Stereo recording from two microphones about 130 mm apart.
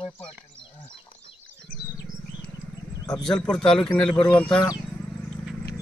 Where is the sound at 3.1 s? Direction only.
5° left (ahead or behind).